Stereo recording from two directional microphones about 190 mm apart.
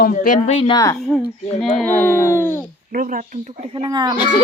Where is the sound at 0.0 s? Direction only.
45° left (ahead or behind).